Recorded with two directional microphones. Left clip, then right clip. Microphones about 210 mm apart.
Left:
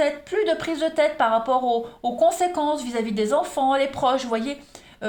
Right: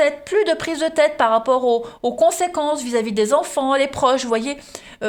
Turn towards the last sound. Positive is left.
turn(degrees=-50)  # may be behind; listen again after turning